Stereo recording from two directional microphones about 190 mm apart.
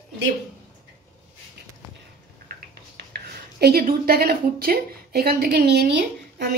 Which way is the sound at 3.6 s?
50° right (ahead or behind).